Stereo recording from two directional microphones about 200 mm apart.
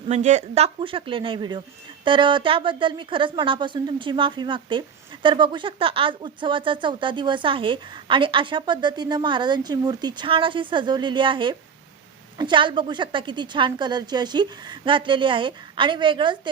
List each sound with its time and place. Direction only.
0.1 s a woman's voice: 35° right (ahead or behind)